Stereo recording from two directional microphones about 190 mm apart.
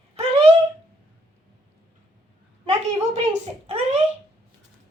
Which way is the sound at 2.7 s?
35° right (ahead or behind).